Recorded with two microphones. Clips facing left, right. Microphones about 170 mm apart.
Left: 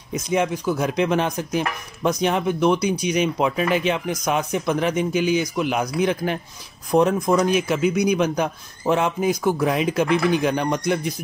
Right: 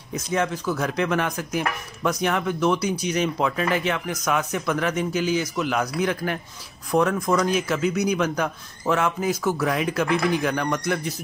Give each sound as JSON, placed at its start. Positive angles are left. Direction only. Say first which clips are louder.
{"t": 0.1, "sound": "speech", "louder": "left 3 dB", "side_deg": 15}